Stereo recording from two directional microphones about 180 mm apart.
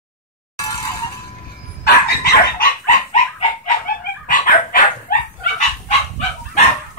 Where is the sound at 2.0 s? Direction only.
60° left (ahead or behind).